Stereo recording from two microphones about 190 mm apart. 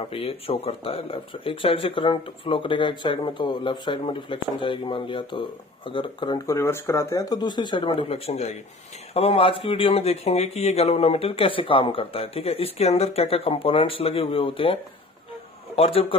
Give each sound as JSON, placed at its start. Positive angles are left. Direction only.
{"t": 0.0, "sound": "speech", "side_deg": 30}